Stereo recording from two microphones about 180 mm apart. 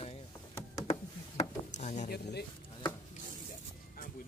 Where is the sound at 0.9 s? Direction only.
40° left (ahead or behind).